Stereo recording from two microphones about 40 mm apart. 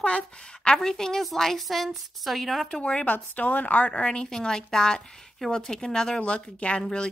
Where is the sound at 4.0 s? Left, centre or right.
Left.